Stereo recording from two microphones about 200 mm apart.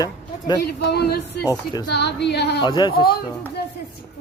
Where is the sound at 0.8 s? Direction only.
55° left (ahead or behind).